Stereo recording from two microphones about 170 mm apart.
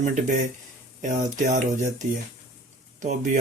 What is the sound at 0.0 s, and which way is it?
Speech, 45° right (ahead or behind).